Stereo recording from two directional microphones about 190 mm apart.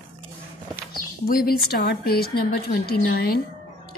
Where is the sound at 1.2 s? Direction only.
50° left (ahead or behind).